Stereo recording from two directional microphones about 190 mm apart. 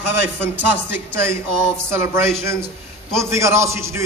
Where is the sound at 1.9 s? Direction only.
15° right (ahead or behind).